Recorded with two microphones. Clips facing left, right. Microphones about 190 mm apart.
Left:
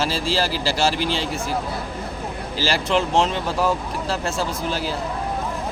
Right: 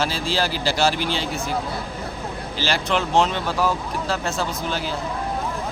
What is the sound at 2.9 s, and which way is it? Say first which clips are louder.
Speech: left 3 dB; centre (ahead or behind).